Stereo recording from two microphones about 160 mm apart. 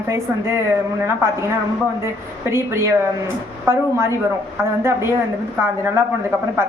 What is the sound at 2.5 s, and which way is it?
A woman's voice, 15° right (ahead or behind).